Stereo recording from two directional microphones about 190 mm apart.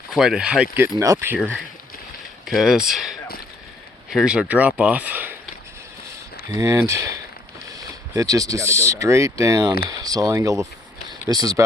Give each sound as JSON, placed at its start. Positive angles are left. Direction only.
{"t": 0.1, "sound": "speech", "side_deg": 0}
{"t": 0.9, "sound": "speech", "side_deg": -15}
{"t": 2.5, "sound": "speech", "side_deg": 0}
{"t": 6.5, "sound": "speech", "side_deg": -15}